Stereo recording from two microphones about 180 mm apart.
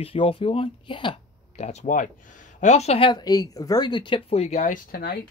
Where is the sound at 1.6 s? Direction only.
40° left (ahead or behind).